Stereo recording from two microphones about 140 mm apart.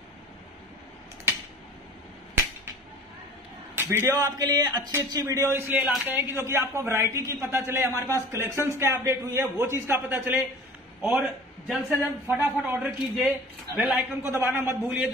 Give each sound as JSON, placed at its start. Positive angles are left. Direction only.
{"t": 4.2, "sound": "a man's voice", "side_deg": -25}
{"t": 11.0, "sound": "a man's voice", "side_deg": -5}
{"t": 12.0, "sound": "a man's voice", "side_deg": -15}
{"t": 14.2, "sound": "speech", "side_deg": -20}